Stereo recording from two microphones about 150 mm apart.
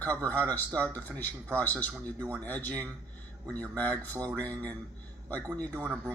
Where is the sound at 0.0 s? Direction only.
10° left (ahead or behind).